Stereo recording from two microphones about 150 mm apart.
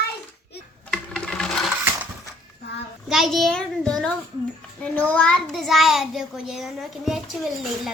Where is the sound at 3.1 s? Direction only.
Centre (ahead or behind).